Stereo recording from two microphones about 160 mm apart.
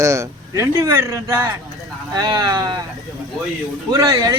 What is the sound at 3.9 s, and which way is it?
Speech, 25° right (ahead or behind).